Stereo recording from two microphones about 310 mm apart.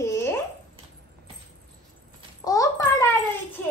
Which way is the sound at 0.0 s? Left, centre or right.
Centre.